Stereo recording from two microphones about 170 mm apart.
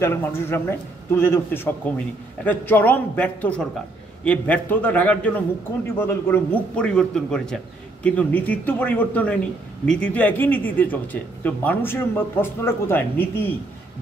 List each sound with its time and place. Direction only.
0.0 s a man's voice: 15° left (ahead or behind)